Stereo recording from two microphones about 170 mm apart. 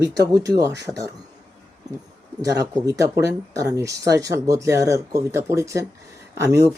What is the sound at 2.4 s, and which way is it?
Speech, 20° right (ahead or behind).